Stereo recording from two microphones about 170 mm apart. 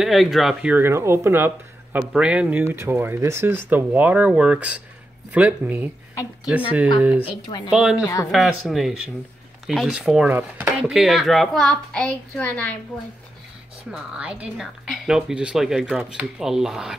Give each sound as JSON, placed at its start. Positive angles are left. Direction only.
{"t": 0.0, "sound": "speech", "side_deg": 0}
{"t": 8.0, "sound": "speech", "side_deg": 20}
{"t": 8.3, "sound": "speech", "side_deg": 0}
{"t": 13.8, "sound": "speech", "side_deg": -5}